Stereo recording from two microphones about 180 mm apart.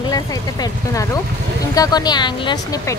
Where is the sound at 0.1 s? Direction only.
20° left (ahead or behind).